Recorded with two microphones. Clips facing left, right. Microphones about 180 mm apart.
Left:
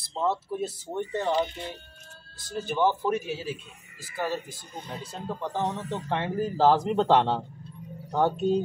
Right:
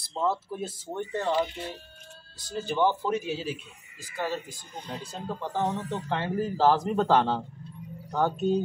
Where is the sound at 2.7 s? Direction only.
10° left (ahead or behind).